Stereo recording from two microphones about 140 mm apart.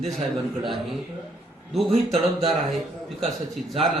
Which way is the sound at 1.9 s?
50° right (ahead or behind).